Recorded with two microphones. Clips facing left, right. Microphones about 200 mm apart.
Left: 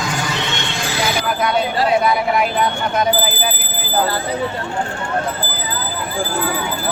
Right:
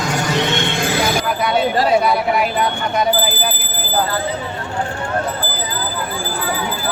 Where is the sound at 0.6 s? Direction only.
55° right (ahead or behind).